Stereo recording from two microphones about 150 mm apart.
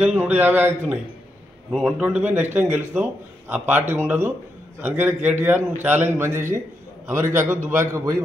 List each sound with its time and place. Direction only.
0.0 s a man's voice: 10° right (ahead or behind)
1.7 s a man's voice: centre (ahead or behind); by 8.2 s 20° right (ahead or behind)